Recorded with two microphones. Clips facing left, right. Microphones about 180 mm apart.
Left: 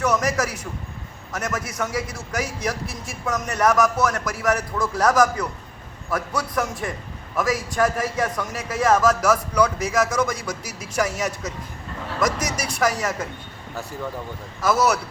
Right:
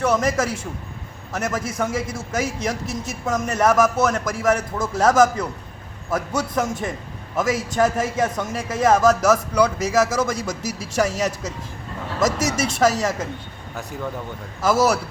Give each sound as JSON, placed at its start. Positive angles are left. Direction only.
{"t": 0.0, "sound": "a man's voice", "side_deg": -25}
{"t": 14.6, "sound": "a man's voice", "side_deg": -25}